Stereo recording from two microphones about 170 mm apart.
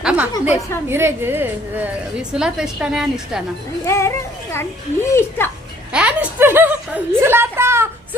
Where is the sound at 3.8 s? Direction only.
15° left (ahead or behind).